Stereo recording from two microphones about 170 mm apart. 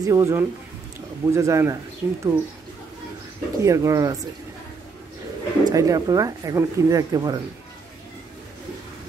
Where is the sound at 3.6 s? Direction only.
20° right (ahead or behind).